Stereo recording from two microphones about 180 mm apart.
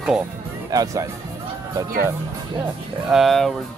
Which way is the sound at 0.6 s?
20° right (ahead or behind).